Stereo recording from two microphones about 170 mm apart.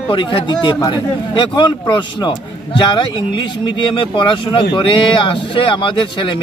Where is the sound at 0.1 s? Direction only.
30° left (ahead or behind).